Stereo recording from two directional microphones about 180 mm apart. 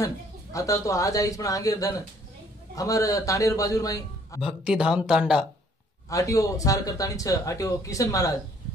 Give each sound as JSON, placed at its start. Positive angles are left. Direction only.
{"t": 0.0, "sound": "speech", "side_deg": 20}
{"t": 4.4, "sound": "speech", "side_deg": -5}
{"t": 6.0, "sound": "speech", "side_deg": 20}